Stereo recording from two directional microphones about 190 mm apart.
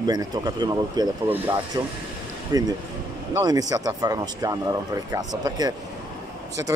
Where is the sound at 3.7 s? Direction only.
20° right (ahead or behind).